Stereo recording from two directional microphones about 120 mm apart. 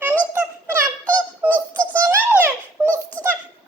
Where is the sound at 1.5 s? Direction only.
15° left (ahead or behind).